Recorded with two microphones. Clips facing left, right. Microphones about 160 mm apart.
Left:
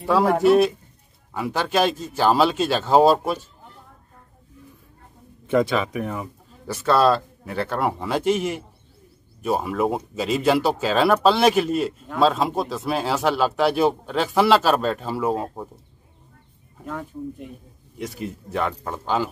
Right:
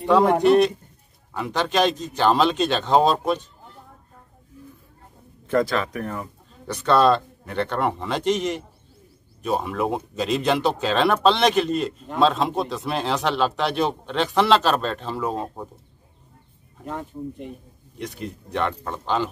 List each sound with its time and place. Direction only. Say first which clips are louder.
0.0 s speech: right 1 dB; 5° left (ahead or behind)
5.5 s speech: left 1 dB; 5° left (ahead or behind)
17.9 s speech: left 2 dB; 5° left (ahead or behind)